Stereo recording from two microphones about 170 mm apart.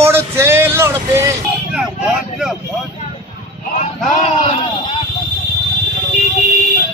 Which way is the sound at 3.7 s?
40° left (ahead or behind).